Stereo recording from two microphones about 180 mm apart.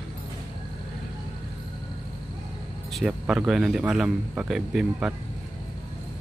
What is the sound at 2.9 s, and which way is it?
Speech, centre (ahead or behind).